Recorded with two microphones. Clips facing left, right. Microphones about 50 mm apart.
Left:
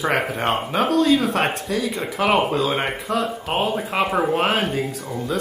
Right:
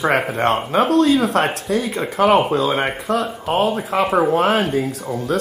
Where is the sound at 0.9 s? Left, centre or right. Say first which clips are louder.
Right 2 dB; right.